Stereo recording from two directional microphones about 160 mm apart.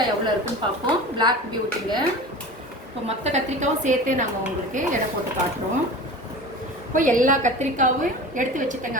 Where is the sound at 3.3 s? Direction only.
50° right (ahead or behind).